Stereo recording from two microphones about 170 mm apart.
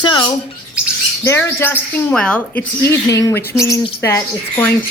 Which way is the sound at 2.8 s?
20° left (ahead or behind).